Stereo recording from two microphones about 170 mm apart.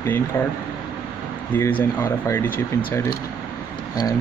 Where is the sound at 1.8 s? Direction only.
15° left (ahead or behind).